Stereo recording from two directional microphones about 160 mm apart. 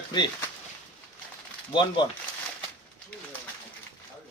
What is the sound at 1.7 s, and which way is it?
Speech, 30° left (ahead or behind).